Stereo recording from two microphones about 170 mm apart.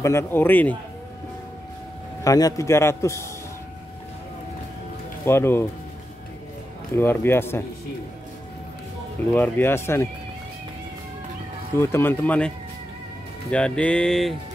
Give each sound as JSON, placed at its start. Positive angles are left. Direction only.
{"t": 0.0, "sound": "speech", "side_deg": 15}
{"t": 2.2, "sound": "speech", "side_deg": 20}
{"t": 5.2, "sound": "speech", "side_deg": 15}
{"t": 7.0, "sound": "speech", "side_deg": 15}
{"t": 9.3, "sound": "speech", "side_deg": 10}
{"t": 11.8, "sound": "speech", "side_deg": 15}
{"t": 13.5, "sound": "music", "side_deg": 5}